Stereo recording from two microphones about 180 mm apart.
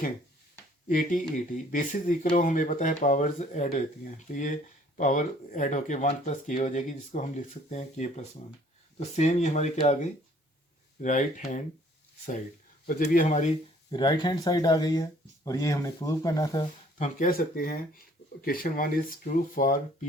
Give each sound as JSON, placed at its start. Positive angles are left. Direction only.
{"t": 0.9, "sound": "speech", "side_deg": 50}
{"t": 11.0, "sound": "speech", "side_deg": 45}
{"t": 12.8, "sound": "speech", "side_deg": 50}
{"t": 13.9, "sound": "speech", "side_deg": 25}
{"t": 17.0, "sound": "speech", "side_deg": 50}